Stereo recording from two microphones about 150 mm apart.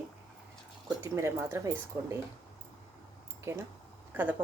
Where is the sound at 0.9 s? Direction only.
20° right (ahead or behind).